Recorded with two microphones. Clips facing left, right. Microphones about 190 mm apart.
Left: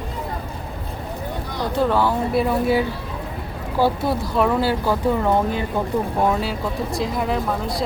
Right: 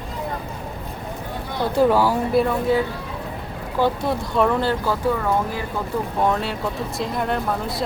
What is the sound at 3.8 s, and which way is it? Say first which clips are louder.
Speech: left 1 dB; 5° left (ahead or behind).